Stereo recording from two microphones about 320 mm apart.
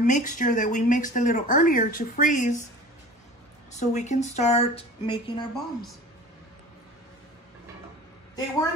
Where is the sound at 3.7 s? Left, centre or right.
Left.